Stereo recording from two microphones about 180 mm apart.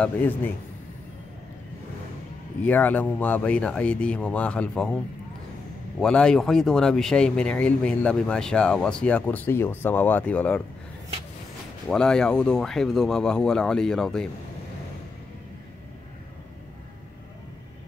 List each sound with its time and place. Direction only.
0.0 s speech: 10° left (ahead or behind)
2.6 s speech: 10° left (ahead or behind)
11.9 s speech: 5° left (ahead or behind)